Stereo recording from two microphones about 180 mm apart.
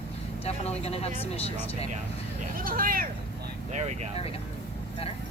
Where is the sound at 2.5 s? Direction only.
50° right (ahead or behind).